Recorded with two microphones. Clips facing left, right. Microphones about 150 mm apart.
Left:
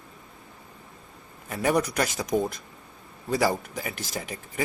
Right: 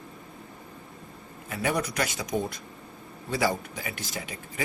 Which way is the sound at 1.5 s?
40° left (ahead or behind).